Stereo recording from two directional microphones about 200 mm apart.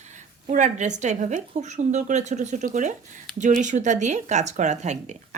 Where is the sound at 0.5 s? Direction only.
35° right (ahead or behind).